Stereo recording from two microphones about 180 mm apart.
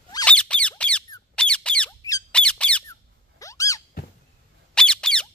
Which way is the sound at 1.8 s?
20° left (ahead or behind).